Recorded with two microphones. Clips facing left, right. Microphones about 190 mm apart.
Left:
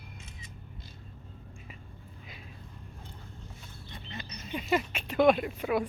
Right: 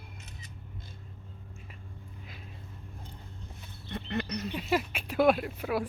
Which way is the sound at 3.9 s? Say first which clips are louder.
Right 12 dB; 65° right (ahead or behind).